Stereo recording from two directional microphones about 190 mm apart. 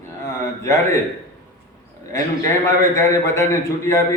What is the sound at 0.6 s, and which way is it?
Speech, 15° left (ahead or behind).